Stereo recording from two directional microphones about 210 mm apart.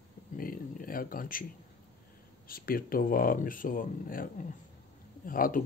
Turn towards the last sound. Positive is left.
turn(degrees=40)  # may be behind; listen again after turning